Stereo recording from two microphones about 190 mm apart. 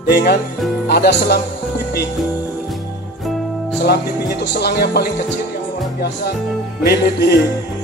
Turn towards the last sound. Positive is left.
turn(degrees=55)  # may be behind; listen again after turning